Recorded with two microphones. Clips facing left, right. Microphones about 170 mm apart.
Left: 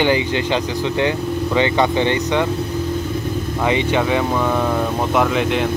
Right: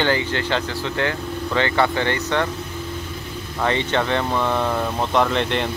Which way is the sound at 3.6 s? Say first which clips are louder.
Left 3 dB; 10° left (ahead or behind).